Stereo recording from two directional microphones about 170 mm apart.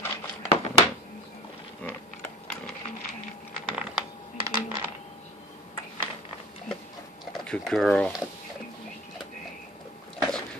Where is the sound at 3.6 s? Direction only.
5° right (ahead or behind).